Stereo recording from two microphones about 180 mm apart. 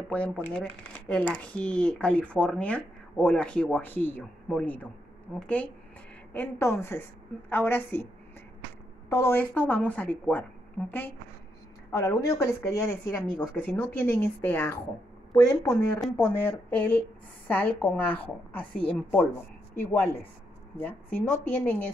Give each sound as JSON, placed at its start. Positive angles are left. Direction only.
{"t": 0.1, "sound": "speech", "side_deg": 5}
{"t": 6.3, "sound": "speech", "side_deg": 10}
{"t": 9.1, "sound": "speech", "side_deg": 15}